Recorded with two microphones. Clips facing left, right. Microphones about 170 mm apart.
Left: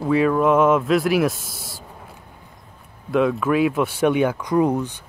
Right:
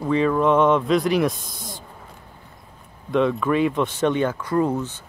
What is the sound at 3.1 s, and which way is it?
Speech, 5° left (ahead or behind).